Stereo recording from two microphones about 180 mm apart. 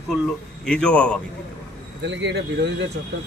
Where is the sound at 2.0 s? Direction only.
85° right.